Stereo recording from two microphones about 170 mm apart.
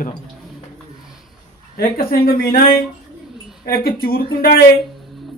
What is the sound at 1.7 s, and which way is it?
Speech, 60° left (ahead or behind).